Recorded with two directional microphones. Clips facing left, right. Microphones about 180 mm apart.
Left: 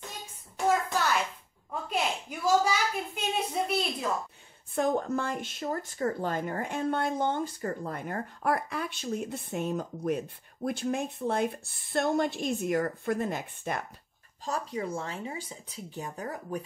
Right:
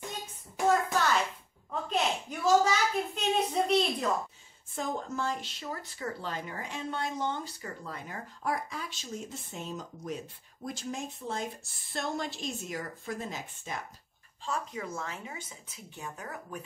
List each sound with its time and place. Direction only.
0.7 s hands: centre (ahead or behind)
1.7 s a sound: 10° left (ahead or behind)
4.7 s speech: 60° left (ahead or behind)
14.4 s speech: 35° left (ahead or behind)